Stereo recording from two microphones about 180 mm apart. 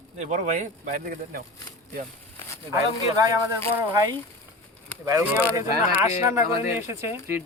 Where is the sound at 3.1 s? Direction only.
20° right (ahead or behind).